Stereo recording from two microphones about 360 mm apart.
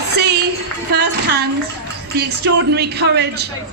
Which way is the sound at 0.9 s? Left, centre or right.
Right.